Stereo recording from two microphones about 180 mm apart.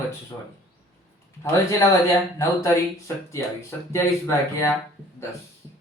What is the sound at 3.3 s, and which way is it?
Speech, 15° left (ahead or behind).